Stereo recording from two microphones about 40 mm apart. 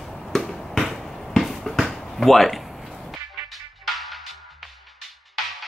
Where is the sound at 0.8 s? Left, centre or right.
Centre.